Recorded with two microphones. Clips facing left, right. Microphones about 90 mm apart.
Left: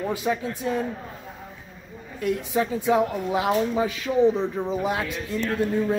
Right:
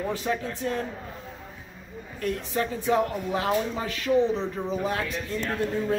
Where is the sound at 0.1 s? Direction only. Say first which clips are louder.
Left 3 dB; 10° left (ahead or behind).